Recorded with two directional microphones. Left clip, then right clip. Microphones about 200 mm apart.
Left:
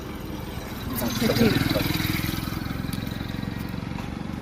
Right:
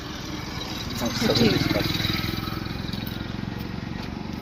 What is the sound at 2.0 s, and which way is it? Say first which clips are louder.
Vehicle: right 1 dB; 60° left (ahead or behind).